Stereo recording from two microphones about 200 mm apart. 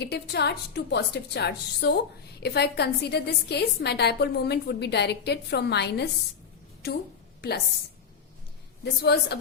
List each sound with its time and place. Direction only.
0.0 s a woman's voice: 55° left (ahead or behind)
8.8 s a woman's voice: 55° left (ahead or behind)